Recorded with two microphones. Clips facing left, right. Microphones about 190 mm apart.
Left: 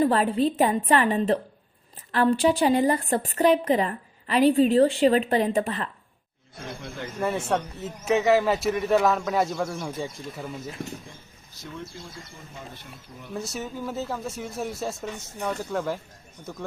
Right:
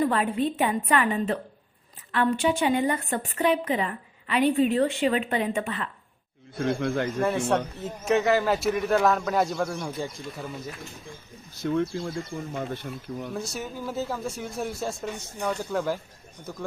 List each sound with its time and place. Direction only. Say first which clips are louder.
0.0 s a woman's voice: left 3 dB; 35° left (ahead or behind)
6.7 s speech: right 10 dB; 65° right (ahead or behind)
7.2 s a man's voice: left 2 dB; 5° left (ahead or behind)
11.6 s speech: right 13 dB; 60° right (ahead or behind)
12.3 s speech: right 11 dB; 65° right (ahead or behind)
13.3 s a man's voice: even; centre (ahead or behind)